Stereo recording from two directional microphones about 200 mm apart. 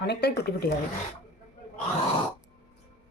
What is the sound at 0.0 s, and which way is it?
Speech, 55° left (ahead or behind).